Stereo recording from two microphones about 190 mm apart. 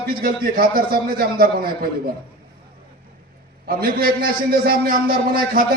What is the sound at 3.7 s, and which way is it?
A man's voice, 50° right (ahead or behind).